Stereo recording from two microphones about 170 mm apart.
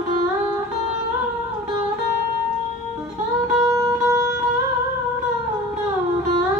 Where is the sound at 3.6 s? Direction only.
20° right (ahead or behind).